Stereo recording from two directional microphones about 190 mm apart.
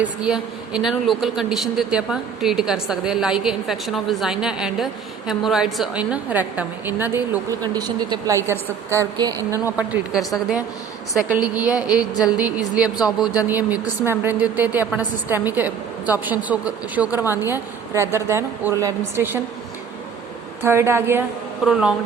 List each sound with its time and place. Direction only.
0.0 s a woman's voice: 5° right (ahead or behind)
17.1 s a woman's voice: 15° left (ahead or behind)
17.4 s a woman's voice: 15° right (ahead or behind)
20.6 s a woman's voice: 15° right (ahead or behind)